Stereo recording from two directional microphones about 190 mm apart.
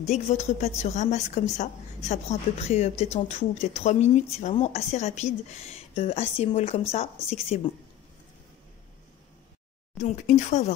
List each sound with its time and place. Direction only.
0.3 s a woman's voice: 35° left (ahead or behind)
9.9 s a woman's voice: 40° left (ahead or behind)